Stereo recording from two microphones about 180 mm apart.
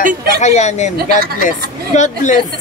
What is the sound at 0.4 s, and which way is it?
Speech, 40° left (ahead or behind).